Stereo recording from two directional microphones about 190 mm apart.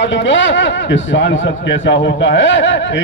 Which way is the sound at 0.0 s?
70° left (ahead or behind).